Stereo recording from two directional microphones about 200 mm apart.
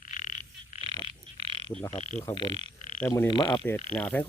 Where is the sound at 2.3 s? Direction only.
25° left (ahead or behind).